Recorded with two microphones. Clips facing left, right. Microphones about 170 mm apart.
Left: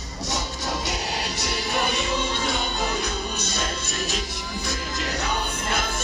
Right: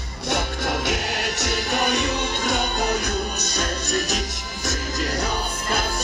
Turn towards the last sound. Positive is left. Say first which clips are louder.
# right 1 dB
turn(degrees=-35)  # may be behind; listen again after turning